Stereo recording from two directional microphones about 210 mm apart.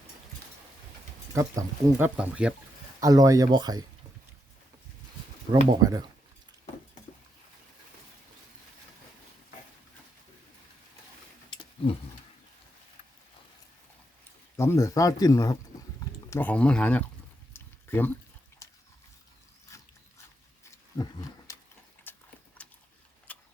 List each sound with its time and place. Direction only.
1.3 s speech: 15° right (ahead or behind)
3.0 s speech: 15° right (ahead or behind)
5.5 s speech: 20° right (ahead or behind)
14.5 s speech: 15° left (ahead or behind)
17.5 s a sound: 10° left (ahead or behind)
19.7 s dog: 15° left (ahead or behind)
20.7 s roaring cats: 15° left (ahead or behind)
22.1 s dog: 10° left (ahead or behind)
22.6 s boat: 5° left (ahead or behind)
23.3 s tick-tock: 5° left (ahead or behind)